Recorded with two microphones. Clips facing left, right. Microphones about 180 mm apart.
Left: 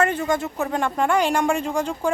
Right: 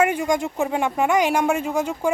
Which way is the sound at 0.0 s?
10° right (ahead or behind).